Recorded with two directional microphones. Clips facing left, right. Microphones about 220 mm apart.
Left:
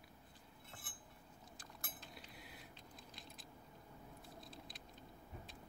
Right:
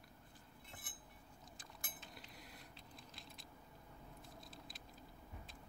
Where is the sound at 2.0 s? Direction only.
Centre (ahead or behind).